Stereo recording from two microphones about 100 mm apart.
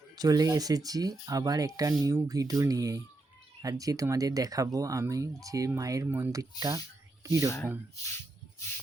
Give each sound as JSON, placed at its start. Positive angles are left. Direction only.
{"t": 0.2, "sound": "speech", "side_deg": -40}
{"t": 6.1, "sound": "speech", "side_deg": -20}
{"t": 6.3, "sound": "speech", "side_deg": -35}